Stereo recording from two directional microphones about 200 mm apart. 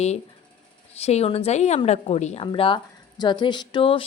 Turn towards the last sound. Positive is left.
turn(degrees=25)  # may be behind; listen again after turning